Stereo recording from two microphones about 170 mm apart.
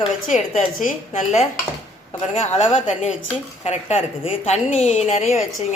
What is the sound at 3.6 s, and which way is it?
A woman's voice, 40° left (ahead or behind).